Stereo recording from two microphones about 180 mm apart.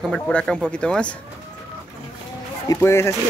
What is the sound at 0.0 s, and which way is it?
Speech, 5° left (ahead or behind).